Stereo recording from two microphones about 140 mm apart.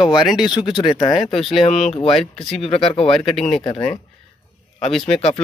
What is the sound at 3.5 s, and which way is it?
Speech, 45° left (ahead or behind).